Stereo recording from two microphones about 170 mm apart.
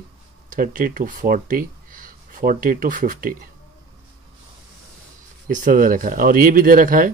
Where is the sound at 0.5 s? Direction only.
55° right (ahead or behind).